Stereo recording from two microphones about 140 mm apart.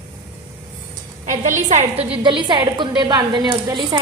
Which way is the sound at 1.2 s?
60° right (ahead or behind).